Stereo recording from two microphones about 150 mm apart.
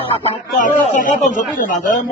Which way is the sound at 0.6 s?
60° left (ahead or behind).